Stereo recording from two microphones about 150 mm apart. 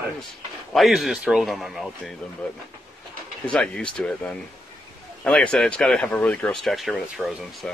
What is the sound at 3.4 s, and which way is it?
Speech, 5° left (ahead or behind).